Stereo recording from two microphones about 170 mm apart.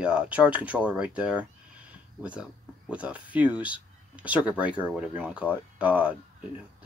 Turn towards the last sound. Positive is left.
turn(degrees=-10)  # may be behind; listen again after turning